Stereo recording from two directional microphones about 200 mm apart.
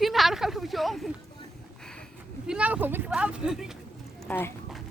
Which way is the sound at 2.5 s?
5° right (ahead or behind).